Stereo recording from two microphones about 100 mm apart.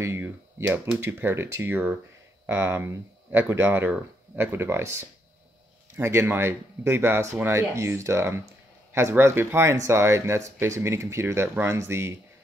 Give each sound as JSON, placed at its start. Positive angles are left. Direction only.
{"t": 0.0, "sound": "speech", "side_deg": -25}
{"t": 5.9, "sound": "speech", "side_deg": -25}